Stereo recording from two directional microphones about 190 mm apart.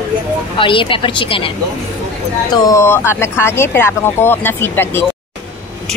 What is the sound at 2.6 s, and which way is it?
A woman's voice, 15° left (ahead or behind).